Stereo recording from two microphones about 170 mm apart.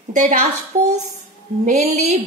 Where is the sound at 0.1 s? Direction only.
50° right (ahead or behind).